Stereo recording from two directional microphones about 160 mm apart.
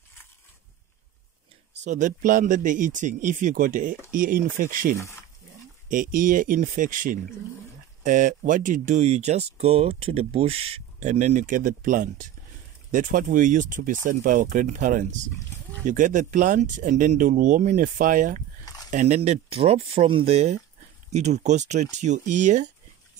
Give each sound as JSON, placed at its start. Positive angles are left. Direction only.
{"t": 1.9, "sound": "speech", "side_deg": -50}